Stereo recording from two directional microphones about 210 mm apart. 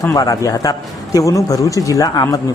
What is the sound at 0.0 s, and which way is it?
Speech, 15° left (ahead or behind).